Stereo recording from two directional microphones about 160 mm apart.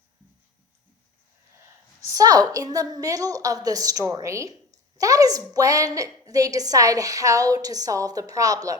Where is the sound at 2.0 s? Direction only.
20° right (ahead or behind).